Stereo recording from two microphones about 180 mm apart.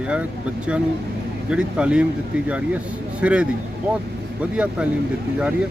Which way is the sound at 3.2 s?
5° right (ahead or behind).